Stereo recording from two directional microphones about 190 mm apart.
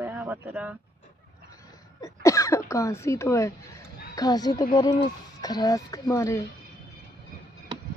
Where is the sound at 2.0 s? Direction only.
15° left (ahead or behind).